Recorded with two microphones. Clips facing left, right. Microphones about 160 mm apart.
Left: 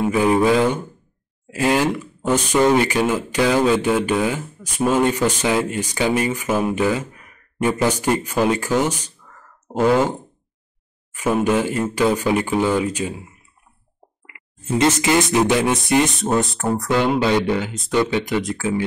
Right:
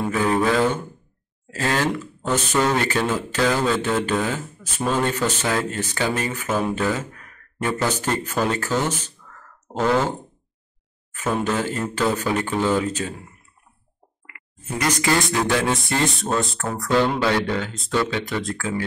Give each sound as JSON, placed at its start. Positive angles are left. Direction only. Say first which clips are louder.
{"t": 0.0, "sound": "speech", "louder": "left 4 dB", "side_deg": 15}
{"t": 11.1, "sound": "speech", "louder": "left 5 dB", "side_deg": 10}
{"t": 14.2, "sound": "speech", "louder": "left 6 dB", "side_deg": 25}